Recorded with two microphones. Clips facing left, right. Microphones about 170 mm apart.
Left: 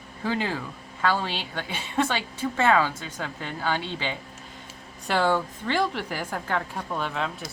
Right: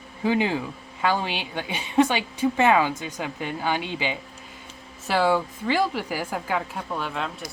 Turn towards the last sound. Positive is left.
turn(degrees=0)  # may be behind; listen again after turning